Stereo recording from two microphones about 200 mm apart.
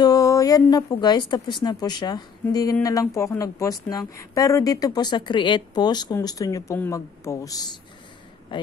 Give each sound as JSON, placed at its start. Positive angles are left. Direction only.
{"t": 0.0, "sound": "a woman's voice", "side_deg": 15}